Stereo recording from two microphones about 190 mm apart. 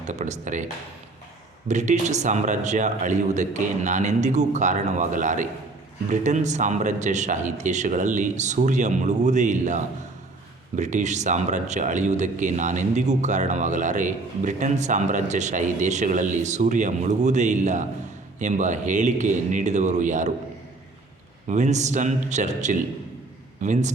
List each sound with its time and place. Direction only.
0.0 s speech: 40° right (ahead or behind)
1.6 s speech: 40° right (ahead or behind)
21.4 s speech: 40° right (ahead or behind)